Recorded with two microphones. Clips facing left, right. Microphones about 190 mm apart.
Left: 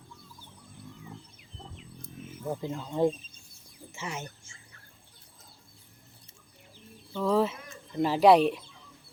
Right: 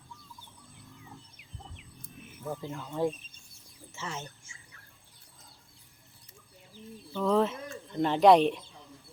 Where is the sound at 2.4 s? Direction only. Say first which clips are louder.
Left 3 dB; 20° left (ahead or behind).